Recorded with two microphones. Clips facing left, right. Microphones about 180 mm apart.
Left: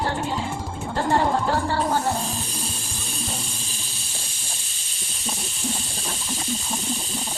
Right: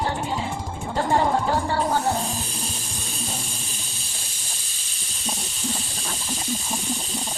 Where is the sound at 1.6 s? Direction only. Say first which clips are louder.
Even; 15° right (ahead or behind).